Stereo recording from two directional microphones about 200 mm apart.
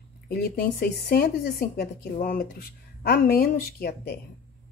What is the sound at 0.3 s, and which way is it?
Speech, 50° left (ahead or behind).